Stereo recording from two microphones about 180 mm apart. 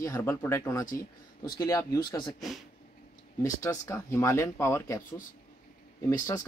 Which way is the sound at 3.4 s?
20° left (ahead or behind).